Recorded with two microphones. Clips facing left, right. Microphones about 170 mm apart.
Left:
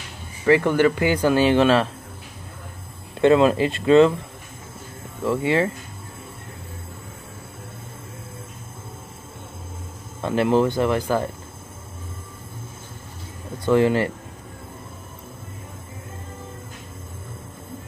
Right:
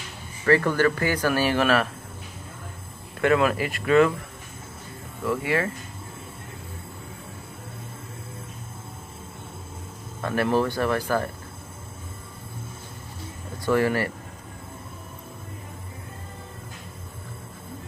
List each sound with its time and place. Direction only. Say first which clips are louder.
0.5 s speech: left 3 dB; 20° left (ahead or behind)
3.2 s speech: left 5 dB; 25° left (ahead or behind)
5.2 s speech: left 4 dB; 25° left (ahead or behind)
10.2 s speech: left 4 dB; 20° left (ahead or behind)
13.7 s speech: left 4 dB; 20° left (ahead or behind)